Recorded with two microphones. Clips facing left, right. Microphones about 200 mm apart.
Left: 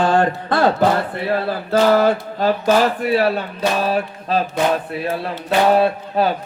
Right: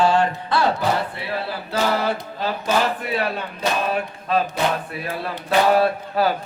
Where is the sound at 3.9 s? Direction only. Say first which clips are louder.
Left 2 dB; 30° left (ahead or behind).